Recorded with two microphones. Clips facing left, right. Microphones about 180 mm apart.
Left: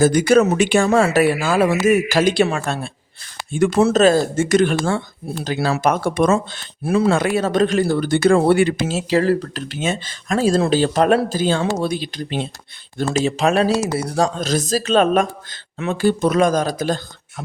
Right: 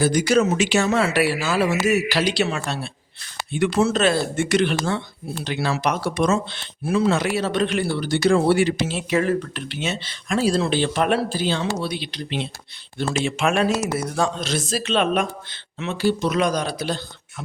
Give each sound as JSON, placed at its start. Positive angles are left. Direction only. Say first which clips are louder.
{"t": 0.0, "sound": "speech", "louder": "left 5 dB", "side_deg": 55}
{"t": 4.0, "sound": "speech", "louder": "left 6 dB", "side_deg": 40}
{"t": 9.0, "sound": "speech", "louder": "left 4 dB", "side_deg": 35}